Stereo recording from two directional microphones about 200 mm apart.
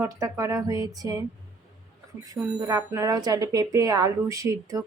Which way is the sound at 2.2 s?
15° right (ahead or behind).